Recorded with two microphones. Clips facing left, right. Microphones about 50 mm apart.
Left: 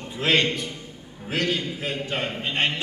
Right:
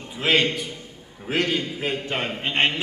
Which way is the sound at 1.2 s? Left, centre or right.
Right.